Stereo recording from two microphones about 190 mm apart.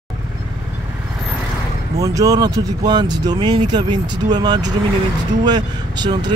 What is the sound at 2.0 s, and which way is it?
Speech, 20° right (ahead or behind).